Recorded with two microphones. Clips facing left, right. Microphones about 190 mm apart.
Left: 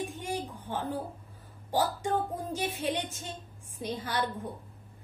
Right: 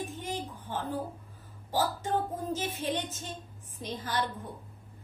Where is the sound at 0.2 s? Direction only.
15° left (ahead or behind).